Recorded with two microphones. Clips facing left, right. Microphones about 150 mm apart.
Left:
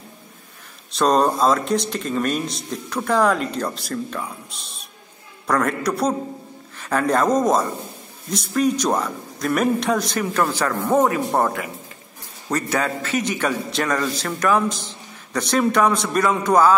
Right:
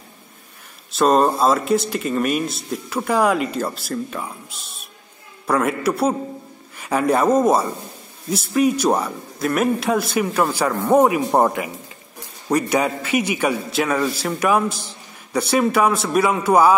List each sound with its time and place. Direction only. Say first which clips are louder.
0.9 s a man's voice: right 2 dB; 5° right (ahead or behind)